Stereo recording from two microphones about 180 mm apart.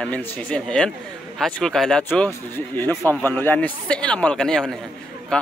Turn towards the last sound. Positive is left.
turn(degrees=5)  # may be behind; listen again after turning